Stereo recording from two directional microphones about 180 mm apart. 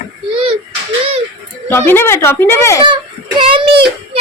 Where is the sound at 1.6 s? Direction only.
10° left (ahead or behind).